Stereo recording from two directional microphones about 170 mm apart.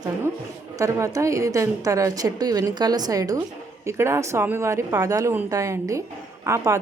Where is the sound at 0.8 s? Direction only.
20° right (ahead or behind).